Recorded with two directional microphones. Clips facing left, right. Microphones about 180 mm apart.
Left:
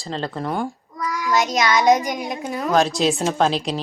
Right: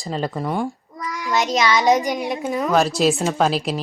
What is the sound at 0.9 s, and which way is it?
Child singing, 25° right (ahead or behind).